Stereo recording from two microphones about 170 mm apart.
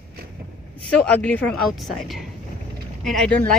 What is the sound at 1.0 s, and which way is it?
A woman's voice, 5° left (ahead or behind).